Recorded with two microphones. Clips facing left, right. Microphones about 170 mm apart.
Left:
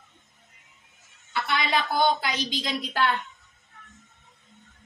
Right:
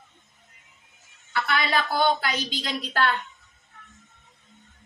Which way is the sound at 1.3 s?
20° left (ahead or behind).